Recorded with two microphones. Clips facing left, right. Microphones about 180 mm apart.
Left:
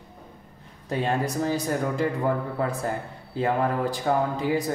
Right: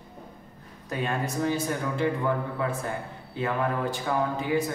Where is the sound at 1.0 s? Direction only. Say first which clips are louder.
Left 2 dB; 35° left (ahead or behind).